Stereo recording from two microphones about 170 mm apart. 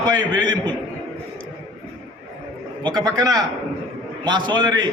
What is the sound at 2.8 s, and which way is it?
A man's voice, 25° right (ahead or behind).